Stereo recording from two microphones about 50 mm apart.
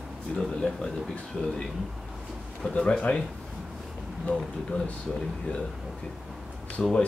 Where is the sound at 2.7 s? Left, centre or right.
Left.